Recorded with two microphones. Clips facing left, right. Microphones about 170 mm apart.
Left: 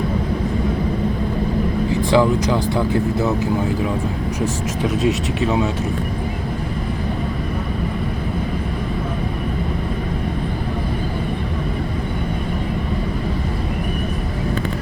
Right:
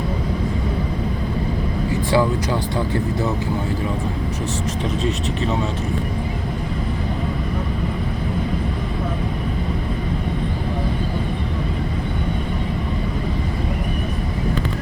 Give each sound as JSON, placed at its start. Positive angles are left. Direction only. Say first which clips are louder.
{"t": 2.1, "sound": "speech", "louder": "left 3 dB", "side_deg": 15}
{"t": 5.0, "sound": "speech", "louder": "left 4 dB", "side_deg": 0}